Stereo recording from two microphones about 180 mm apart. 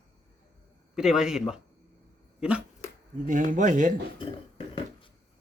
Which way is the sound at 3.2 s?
45° right (ahead or behind).